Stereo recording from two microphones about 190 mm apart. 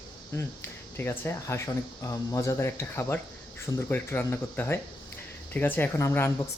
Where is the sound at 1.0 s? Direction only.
10° left (ahead or behind).